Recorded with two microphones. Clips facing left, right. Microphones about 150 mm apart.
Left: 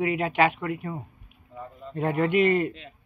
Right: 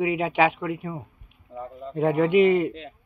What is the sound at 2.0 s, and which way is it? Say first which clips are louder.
Speech: right 4 dB; 10° right (ahead or behind).